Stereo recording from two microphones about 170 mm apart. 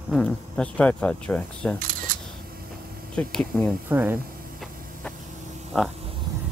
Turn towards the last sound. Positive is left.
turn(degrees=0)  # may be behind; listen again after turning